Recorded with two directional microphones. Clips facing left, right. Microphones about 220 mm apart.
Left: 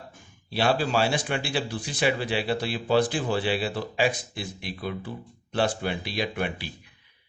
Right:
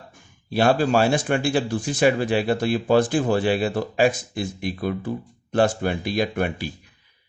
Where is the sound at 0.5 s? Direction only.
50° right (ahead or behind).